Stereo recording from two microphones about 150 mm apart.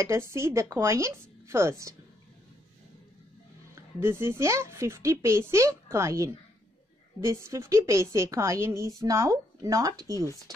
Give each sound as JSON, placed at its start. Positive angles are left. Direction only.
{"t": 0.0, "sound": "speech", "side_deg": -15}
{"t": 3.7, "sound": "speech", "side_deg": -15}